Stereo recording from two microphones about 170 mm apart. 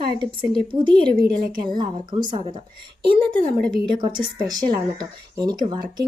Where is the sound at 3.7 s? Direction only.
25° right (ahead or behind).